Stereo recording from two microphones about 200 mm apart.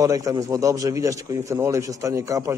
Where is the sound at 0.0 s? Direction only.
15° right (ahead or behind).